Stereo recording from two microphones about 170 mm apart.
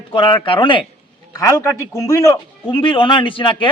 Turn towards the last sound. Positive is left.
turn(degrees=30)  # may be behind; listen again after turning